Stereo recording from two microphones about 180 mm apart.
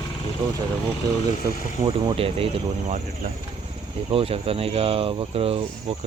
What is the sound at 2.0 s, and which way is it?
Speech, 30° right (ahead or behind).